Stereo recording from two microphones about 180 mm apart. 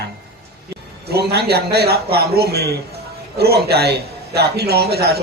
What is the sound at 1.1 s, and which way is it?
A man's voice, 65° right (ahead or behind).